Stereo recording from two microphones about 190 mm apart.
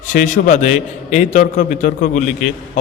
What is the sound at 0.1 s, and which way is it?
A man's voice, 40° left (ahead or behind).